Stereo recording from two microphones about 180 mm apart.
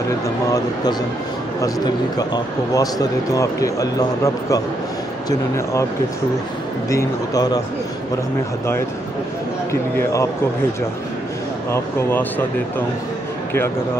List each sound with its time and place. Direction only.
2.1 s speech: 20° left (ahead or behind)
6.9 s speech: 20° left (ahead or behind)
9.7 s speech: 15° left (ahead or behind)
11.7 s speech: 10° left (ahead or behind)